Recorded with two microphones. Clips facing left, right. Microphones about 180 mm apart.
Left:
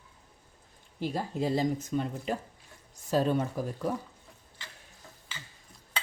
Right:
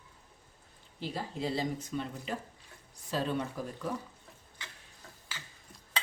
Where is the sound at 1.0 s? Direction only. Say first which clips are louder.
Left 5 dB; 45° left (ahead or behind).